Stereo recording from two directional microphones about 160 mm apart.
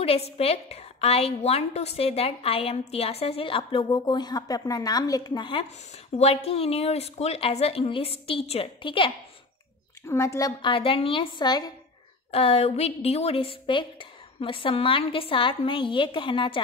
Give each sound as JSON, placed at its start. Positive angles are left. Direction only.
{"t": 0.0, "sound": "a woman's voice", "side_deg": 40}
{"t": 10.0, "sound": "a woman's voice", "side_deg": 20}
{"t": 10.6, "sound": "a woman's voice", "side_deg": 35}
{"t": 12.3, "sound": "a woman's voice", "side_deg": 40}